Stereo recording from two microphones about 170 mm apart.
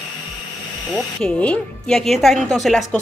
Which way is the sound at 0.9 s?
5° left (ahead or behind).